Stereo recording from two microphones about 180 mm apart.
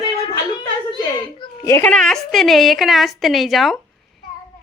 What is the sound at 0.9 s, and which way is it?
Children playing, 20° left (ahead or behind).